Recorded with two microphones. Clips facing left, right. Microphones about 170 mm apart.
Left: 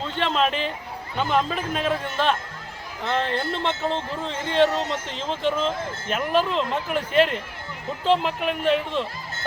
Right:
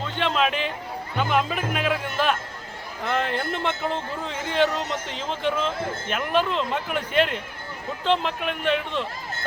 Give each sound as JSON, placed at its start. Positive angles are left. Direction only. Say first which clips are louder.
{"t": 0.2, "sound": "speech", "louder": "left 1 dB", "side_deg": 0}
{"t": 3.7, "sound": "speech", "louder": "left 1 dB", "side_deg": 30}
{"t": 4.5, "sound": "speech", "louder": "left 3 dB", "side_deg": 0}